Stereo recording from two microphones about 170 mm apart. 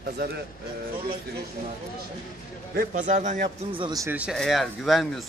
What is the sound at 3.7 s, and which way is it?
Speech, 25° right (ahead or behind).